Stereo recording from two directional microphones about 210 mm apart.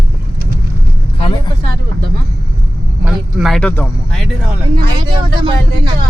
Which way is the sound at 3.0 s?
Centre (ahead or behind).